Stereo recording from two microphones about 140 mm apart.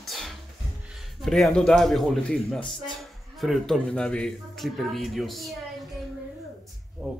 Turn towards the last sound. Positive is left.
turn(degrees=-5)  # may be behind; listen again after turning